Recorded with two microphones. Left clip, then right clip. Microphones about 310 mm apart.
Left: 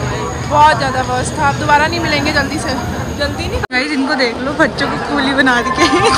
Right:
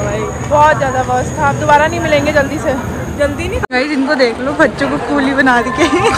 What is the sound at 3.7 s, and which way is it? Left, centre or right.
A woman's voice, centre.